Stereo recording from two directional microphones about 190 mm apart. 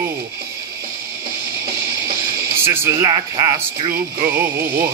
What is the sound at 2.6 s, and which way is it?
Speech, 15° right (ahead or behind).